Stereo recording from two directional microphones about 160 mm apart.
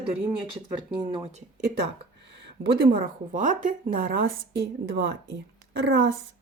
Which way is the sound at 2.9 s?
60° right (ahead or behind).